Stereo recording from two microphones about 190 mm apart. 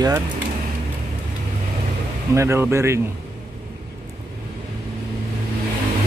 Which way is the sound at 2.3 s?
15° right (ahead or behind).